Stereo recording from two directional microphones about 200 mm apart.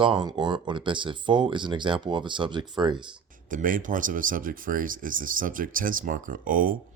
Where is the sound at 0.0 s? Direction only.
25° right (ahead or behind).